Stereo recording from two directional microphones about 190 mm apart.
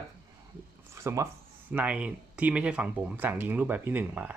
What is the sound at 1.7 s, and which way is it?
Speech, 10° right (ahead or behind).